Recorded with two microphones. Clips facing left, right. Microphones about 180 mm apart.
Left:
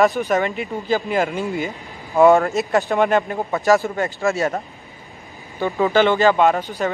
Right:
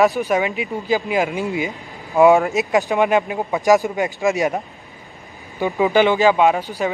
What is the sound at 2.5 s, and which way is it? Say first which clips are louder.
Speech: right 1 dB; 15° right (ahead or behind).